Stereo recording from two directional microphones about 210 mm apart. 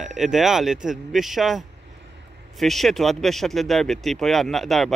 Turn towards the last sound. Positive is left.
turn(degrees=0)  # may be behind; listen again after turning